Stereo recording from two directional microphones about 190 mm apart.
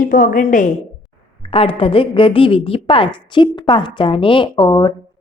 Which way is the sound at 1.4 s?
30° left (ahead or behind).